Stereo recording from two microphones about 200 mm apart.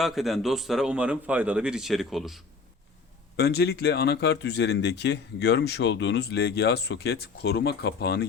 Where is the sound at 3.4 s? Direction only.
55° left (ahead or behind).